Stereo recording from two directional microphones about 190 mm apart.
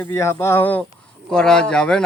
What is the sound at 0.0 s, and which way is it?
Speech, 10° left (ahead or behind).